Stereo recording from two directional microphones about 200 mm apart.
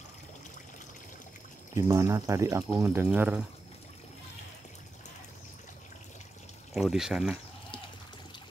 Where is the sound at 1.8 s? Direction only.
15° right (ahead or behind).